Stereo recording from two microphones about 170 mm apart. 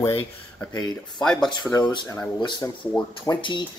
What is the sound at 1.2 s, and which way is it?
Speech, 5° left (ahead or behind).